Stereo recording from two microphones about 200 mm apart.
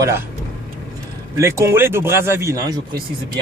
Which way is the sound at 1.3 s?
15° right (ahead or behind).